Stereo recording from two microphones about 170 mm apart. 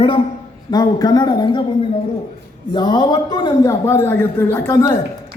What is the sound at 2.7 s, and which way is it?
A man's voice, 25° left (ahead or behind).